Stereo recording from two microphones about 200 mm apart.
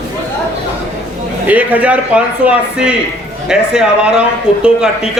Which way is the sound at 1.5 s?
10° right (ahead or behind).